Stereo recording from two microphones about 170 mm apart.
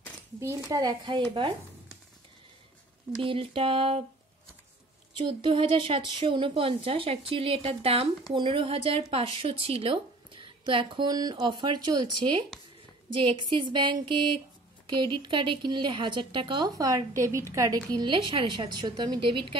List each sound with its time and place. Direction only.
0.7 s speech: 20° right (ahead or behind)
3.2 s a woman's voice: 30° right (ahead or behind)
5.1 s a woman's voice: 30° right (ahead or behind)
17.9 s speech: 30° right (ahead or behind)